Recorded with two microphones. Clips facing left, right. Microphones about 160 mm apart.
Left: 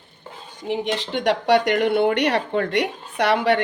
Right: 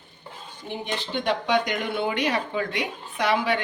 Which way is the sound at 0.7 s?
85° left.